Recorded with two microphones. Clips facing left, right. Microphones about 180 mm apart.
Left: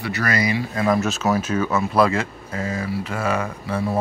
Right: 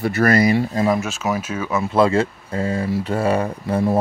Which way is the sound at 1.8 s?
25° right (ahead or behind).